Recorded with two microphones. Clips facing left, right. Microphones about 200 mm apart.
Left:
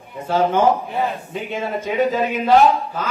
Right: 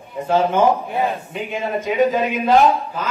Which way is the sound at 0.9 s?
15° right (ahead or behind).